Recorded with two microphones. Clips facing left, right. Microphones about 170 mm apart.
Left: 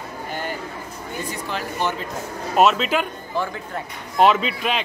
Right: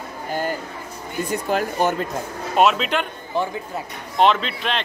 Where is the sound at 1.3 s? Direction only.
45° right (ahead or behind).